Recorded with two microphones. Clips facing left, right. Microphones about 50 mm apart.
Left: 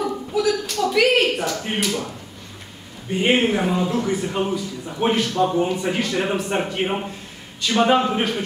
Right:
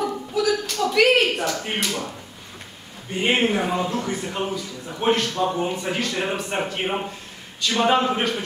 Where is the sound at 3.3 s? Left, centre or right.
Centre.